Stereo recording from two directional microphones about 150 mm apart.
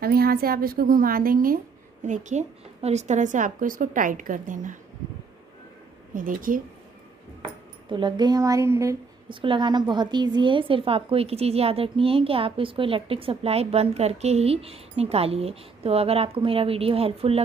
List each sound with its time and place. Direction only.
0.0 s a woman's voice: 90° right; by 1.6 s 70° right (ahead or behind)
2.0 s a woman's voice: 55° right (ahead or behind)
6.1 s a woman's voice: 65° right (ahead or behind)
7.9 s speech: 30° right (ahead or behind)
9.3 s a woman's voice: 35° right (ahead or behind)